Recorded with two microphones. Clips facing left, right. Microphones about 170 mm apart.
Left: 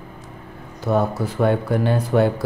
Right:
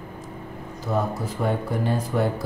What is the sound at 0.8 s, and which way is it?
Speech, 70° left (ahead or behind).